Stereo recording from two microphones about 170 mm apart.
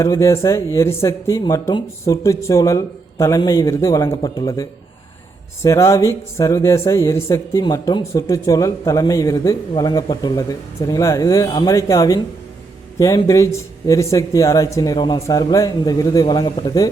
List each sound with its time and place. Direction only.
0.0 s speech: 20° left (ahead or behind)